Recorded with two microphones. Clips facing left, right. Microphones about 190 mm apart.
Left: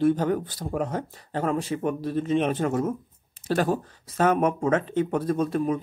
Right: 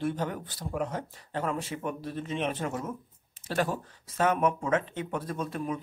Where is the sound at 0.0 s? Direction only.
40° left (ahead or behind).